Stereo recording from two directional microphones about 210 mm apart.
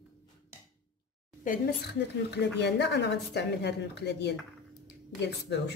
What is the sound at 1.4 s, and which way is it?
A woman's voice, 50° left (ahead or behind).